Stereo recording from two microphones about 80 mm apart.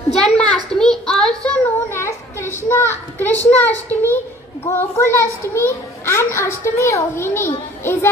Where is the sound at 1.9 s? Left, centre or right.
Left.